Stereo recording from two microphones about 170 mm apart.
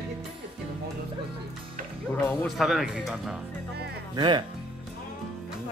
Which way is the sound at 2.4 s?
Centre (ahead or behind).